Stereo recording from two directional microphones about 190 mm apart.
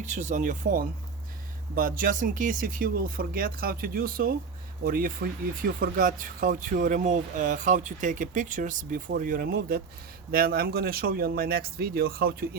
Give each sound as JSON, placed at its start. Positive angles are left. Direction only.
{"t": 0.0, "sound": "speech", "side_deg": -40}